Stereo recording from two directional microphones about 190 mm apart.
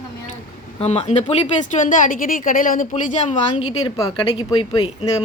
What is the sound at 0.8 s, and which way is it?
A woman's voice, 35° left (ahead or behind).